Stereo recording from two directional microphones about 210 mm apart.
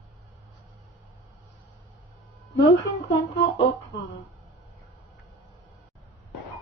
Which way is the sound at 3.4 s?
55° left (ahead or behind).